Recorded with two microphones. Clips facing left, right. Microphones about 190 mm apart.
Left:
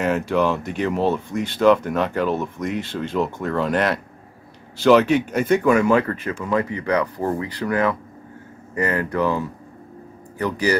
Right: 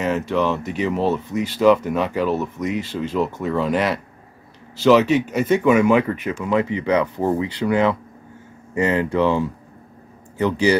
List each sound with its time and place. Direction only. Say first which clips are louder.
0.0 s speech: left 1 dB; centre (ahead or behind); by 10.8 s 25° right (ahead or behind)